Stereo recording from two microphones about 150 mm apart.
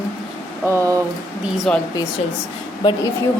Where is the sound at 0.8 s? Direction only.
20° right (ahead or behind).